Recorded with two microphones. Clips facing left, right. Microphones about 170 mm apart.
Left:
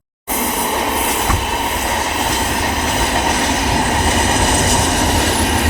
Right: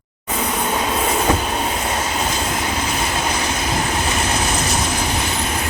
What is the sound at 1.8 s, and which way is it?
Train, 70° left (ahead or behind).